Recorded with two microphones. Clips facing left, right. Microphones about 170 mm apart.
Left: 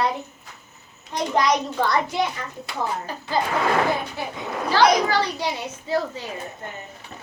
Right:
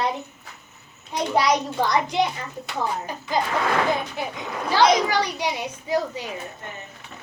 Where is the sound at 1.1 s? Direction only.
10° right (ahead or behind).